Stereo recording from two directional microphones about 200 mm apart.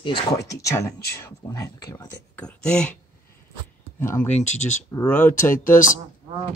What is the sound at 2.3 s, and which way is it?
Speech, 5° left (ahead or behind).